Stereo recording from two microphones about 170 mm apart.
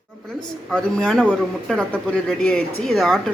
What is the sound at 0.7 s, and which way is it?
Speech, 5° left (ahead or behind).